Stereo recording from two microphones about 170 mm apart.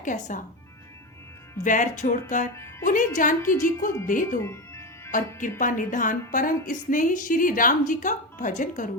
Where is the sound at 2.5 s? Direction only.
15° left (ahead or behind).